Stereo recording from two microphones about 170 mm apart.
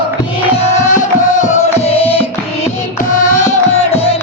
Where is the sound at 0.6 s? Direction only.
45° left (ahead or behind).